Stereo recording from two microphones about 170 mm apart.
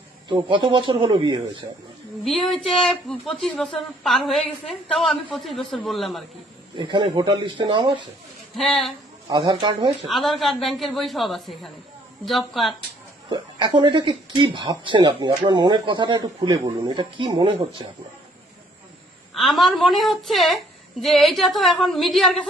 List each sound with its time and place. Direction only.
0.3 s speech: 30° right (ahead or behind)
2.2 s speech: centre (ahead or behind)
6.7 s speech: 30° right (ahead or behind)
8.5 s speech: centre (ahead or behind)
9.4 s speech: 25° right (ahead or behind)
10.1 s speech: centre (ahead or behind)
13.3 s speech: 25° right (ahead or behind)
19.3 s speech: centre (ahead or behind)